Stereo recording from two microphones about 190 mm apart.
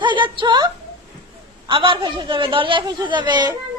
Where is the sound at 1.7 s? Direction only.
25° right (ahead or behind).